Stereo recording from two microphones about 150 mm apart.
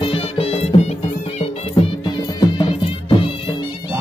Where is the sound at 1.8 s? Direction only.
30° left (ahead or behind).